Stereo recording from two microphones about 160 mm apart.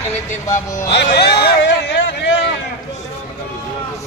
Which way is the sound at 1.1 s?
90° left.